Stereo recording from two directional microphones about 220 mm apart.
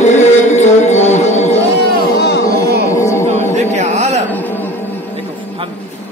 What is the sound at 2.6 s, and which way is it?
Music, 45° right (ahead or behind).